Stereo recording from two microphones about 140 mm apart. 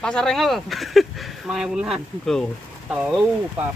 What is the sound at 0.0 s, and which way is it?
Speech, 5° left (ahead or behind).